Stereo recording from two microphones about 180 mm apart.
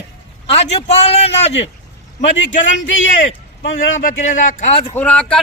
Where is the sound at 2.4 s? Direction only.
90° left.